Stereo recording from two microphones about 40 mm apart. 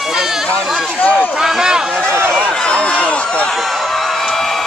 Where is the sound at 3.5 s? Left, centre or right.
Centre.